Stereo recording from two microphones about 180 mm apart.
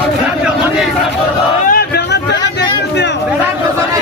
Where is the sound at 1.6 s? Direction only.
55° left (ahead or behind).